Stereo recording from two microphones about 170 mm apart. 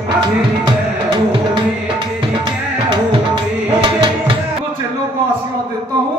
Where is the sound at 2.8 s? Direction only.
30° right (ahead or behind).